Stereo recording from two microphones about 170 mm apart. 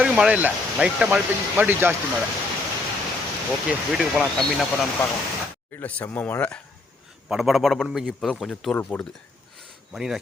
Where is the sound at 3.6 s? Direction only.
5° right (ahead or behind).